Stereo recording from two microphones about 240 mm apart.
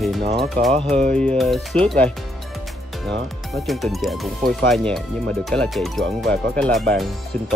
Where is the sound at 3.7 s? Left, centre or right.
Centre.